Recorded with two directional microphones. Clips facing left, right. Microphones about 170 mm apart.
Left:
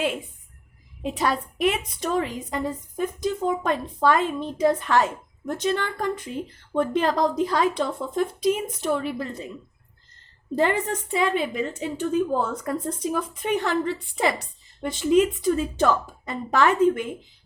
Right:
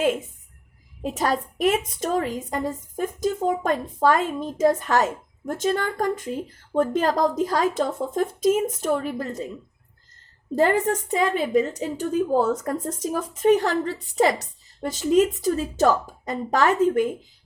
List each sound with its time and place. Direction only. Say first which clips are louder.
0.0 s a woman's voice: right 4 dB; 45° right (ahead or behind)
10.5 s a woman's voice: right 3 dB; 45° right (ahead or behind)